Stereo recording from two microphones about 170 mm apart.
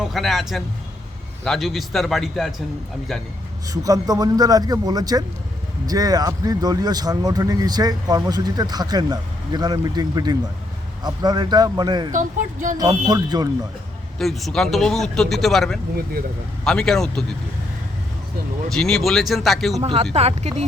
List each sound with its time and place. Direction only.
0.0 s speech: centre (ahead or behind)
3.7 s speech: 20° right (ahead or behind)
12.1 s speech: 50° right (ahead or behind)
12.7 s speech: 20° right (ahead or behind)
14.2 s speech: centre (ahead or behind)
18.7 s speech: 5° left (ahead or behind)
19.8 s speech: 35° right (ahead or behind)